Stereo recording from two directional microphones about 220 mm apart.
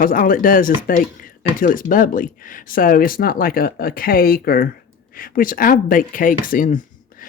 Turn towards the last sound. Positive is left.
turn(degrees=35)  # may be behind; listen again after turning